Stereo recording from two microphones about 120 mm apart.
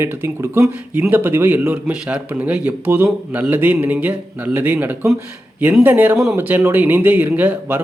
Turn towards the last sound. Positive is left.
turn(degrees=-15)  # may be behind; listen again after turning